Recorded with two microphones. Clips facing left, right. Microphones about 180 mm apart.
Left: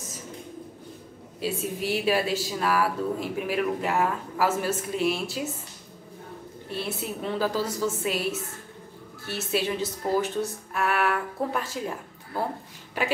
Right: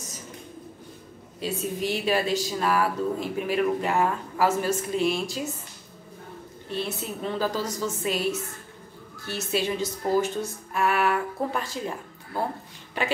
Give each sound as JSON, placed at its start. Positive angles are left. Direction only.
{"t": 1.4, "sound": "speech", "side_deg": 5}
{"t": 6.7, "sound": "a woman's voice", "side_deg": 5}
{"t": 13.0, "sound": "speech", "side_deg": 5}